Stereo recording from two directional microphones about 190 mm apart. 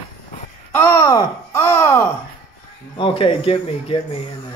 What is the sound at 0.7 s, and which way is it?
Speech, 10° left (ahead or behind).